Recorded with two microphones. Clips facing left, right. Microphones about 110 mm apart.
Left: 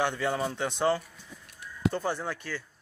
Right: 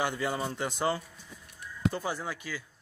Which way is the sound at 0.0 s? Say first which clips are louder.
Left 3 dB; 5° right (ahead or behind).